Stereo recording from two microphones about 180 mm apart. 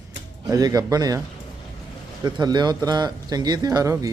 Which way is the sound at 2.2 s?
25° right (ahead or behind).